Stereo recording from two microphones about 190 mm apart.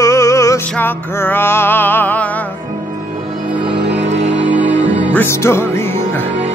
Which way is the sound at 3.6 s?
30° right (ahead or behind).